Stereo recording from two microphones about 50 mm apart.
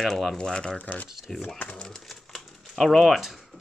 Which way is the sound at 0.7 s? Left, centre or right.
Left.